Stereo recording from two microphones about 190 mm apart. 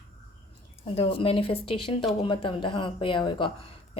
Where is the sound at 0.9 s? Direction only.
30° left (ahead or behind).